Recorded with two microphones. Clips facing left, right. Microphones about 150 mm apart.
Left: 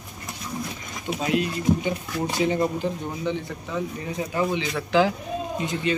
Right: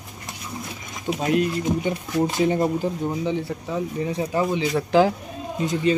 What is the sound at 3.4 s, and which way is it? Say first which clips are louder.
A man's voice: right 3 dB; 35° right (ahead or behind).